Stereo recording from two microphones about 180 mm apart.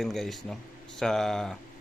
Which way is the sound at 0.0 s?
Centre (ahead or behind).